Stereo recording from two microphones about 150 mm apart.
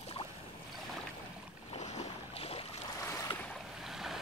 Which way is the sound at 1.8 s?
50° left (ahead or behind).